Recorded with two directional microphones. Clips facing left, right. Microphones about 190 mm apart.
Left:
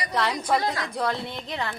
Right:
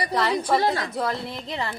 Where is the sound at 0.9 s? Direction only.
Centre (ahead or behind).